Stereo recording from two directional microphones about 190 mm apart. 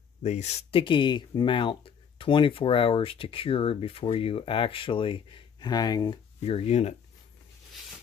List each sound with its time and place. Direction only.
0.2 s speech: 35° left (ahead or behind)